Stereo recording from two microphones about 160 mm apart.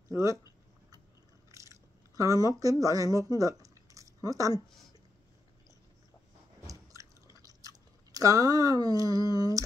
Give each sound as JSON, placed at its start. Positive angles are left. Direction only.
{"t": 0.1, "sound": "speech", "side_deg": -20}
{"t": 1.5, "sound": "chewing", "side_deg": -20}
{"t": 6.7, "sound": "a sound", "side_deg": -20}
{"t": 7.3, "sound": "chewing", "side_deg": -20}